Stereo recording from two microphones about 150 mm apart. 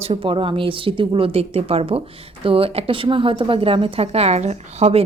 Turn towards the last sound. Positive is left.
turn(degrees=-45)  # may be behind; listen again after turning